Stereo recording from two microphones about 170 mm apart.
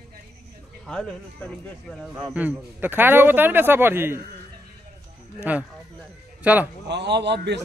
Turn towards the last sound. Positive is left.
turn(degrees=-90)